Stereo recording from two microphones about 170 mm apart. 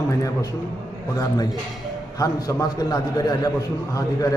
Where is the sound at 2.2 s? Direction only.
20° left (ahead or behind).